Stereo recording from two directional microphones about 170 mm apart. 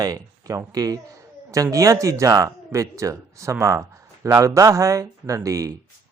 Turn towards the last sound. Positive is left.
turn(degrees=-20)  # may be behind; listen again after turning